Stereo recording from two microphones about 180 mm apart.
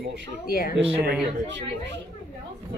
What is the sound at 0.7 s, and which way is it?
Speech, 90° right.